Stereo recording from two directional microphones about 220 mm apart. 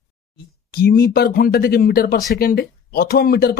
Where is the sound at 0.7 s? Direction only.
45° left (ahead or behind).